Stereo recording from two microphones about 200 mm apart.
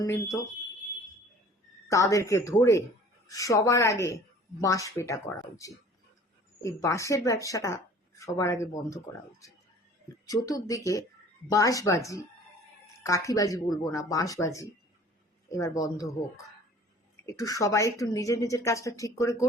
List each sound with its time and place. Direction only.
0.0 s a woman's voice: 15° left (ahead or behind)
1.9 s a woman's voice: 15° left (ahead or behind)
10.2 s a woman's voice: 20° left (ahead or behind)
17.2 s a woman's voice: 15° left (ahead or behind)